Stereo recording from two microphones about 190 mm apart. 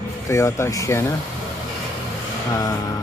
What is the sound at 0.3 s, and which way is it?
Speech, 15° left (ahead or behind).